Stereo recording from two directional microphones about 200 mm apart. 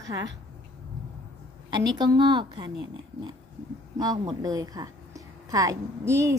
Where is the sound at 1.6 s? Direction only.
20° right (ahead or behind).